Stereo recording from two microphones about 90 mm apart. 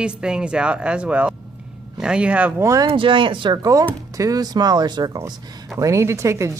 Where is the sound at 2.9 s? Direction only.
70° right (ahead or behind).